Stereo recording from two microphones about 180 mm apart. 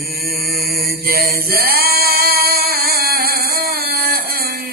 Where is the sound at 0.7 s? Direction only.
55° right (ahead or behind).